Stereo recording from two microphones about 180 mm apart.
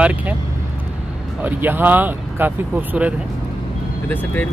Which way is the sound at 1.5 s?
10° right (ahead or behind).